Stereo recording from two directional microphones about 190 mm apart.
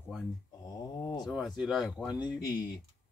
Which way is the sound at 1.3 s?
Centre (ahead or behind).